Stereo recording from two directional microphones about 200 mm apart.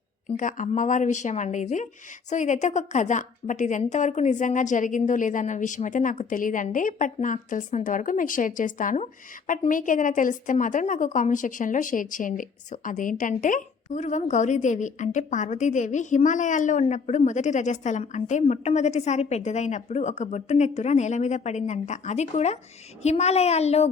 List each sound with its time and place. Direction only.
0.3 s a woman's voice: 40° left (ahead or behind)